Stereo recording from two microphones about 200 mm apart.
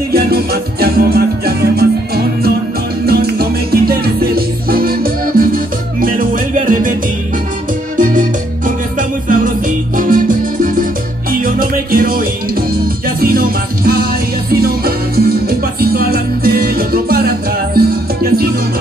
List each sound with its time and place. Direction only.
0.1 s music: 50° right (ahead or behind)
8.0 s organ: 40° right (ahead or behind)
9.9 s music: 45° right (ahead or behind)